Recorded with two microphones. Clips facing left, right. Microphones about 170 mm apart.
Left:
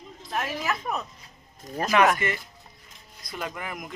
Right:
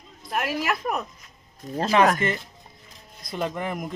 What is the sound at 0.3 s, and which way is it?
Speech, 70° right (ahead or behind).